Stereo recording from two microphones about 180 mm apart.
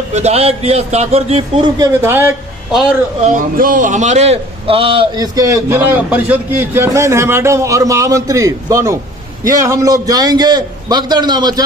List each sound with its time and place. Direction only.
0.1 s a man's voice: 35° right (ahead or behind)
1.8 s a man's voice: 15° right (ahead or behind)
3.3 s a man's voice: 50° right (ahead or behind); by 11.6 s 20° right (ahead or behind)